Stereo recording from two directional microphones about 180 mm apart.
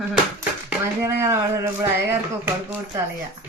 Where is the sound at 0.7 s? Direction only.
15° right (ahead or behind).